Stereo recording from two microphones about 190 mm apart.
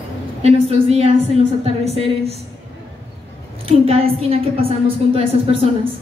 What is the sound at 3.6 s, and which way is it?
A woman's voice, 30° right (ahead or behind).